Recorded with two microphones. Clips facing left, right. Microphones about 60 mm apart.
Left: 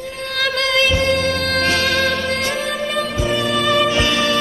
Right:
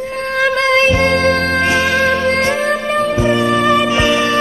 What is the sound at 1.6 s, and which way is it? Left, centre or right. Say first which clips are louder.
Music: right 4 dB; right.